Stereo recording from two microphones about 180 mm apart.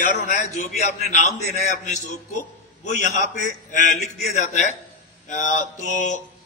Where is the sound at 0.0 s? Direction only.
50° left (ahead or behind).